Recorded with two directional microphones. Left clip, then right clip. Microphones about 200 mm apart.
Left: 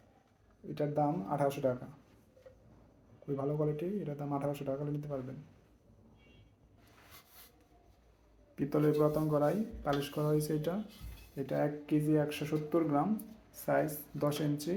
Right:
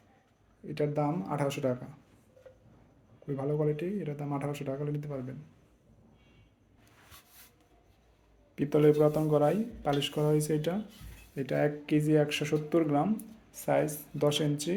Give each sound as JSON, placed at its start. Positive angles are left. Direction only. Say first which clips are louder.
{"t": 0.7, "sound": "speech", "louder": "right 2 dB", "side_deg": -45}
{"t": 3.3, "sound": "speech", "louder": "right 4 dB", "side_deg": -40}
{"t": 8.5, "sound": "speech", "louder": "right 6 dB", "side_deg": -45}